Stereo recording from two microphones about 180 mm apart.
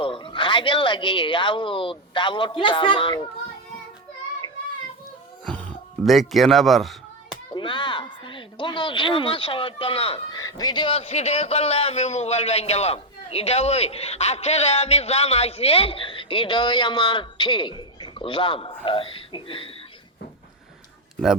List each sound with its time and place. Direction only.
0.0 s speech: 30° left (ahead or behind)
5.5 s music: 5° left (ahead or behind)
7.5 s speech: 25° left (ahead or behind)